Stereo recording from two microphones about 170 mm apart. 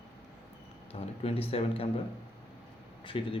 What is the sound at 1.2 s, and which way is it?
Speech, 35° left (ahead or behind).